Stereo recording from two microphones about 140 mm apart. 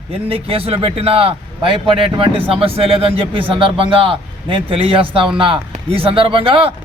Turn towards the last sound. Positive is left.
turn(degrees=-40)  # may be behind; listen again after turning